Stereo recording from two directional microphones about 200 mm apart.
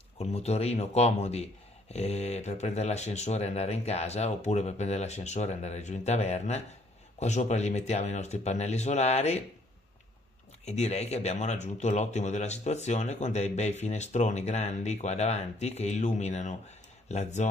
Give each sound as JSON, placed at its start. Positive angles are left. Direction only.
{"t": 0.2, "sound": "speech", "side_deg": 30}
{"t": 10.6, "sound": "speech", "side_deg": 35}